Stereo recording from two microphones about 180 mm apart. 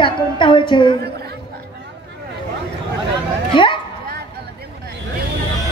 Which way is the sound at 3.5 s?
25° left (ahead or behind).